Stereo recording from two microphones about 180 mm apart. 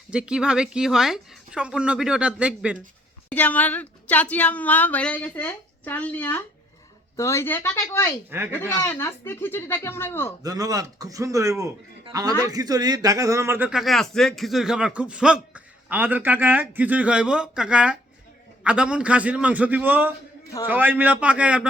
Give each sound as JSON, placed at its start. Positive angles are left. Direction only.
{"t": 0.1, "sound": "speech", "side_deg": -5}
{"t": 3.2, "sound": "speech", "side_deg": 10}
{"t": 8.3, "sound": "speech", "side_deg": -10}
{"t": 8.8, "sound": "speech", "side_deg": 15}
{"t": 10.4, "sound": "speech", "side_deg": -20}